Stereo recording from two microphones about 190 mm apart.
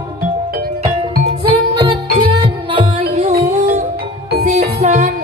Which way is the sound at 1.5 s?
30° right (ahead or behind).